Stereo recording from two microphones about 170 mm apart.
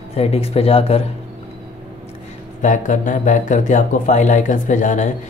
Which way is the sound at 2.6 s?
50° left (ahead or behind).